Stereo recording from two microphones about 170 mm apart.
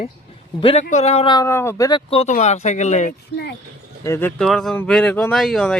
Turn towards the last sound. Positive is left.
turn(degrees=5)  # may be behind; listen again after turning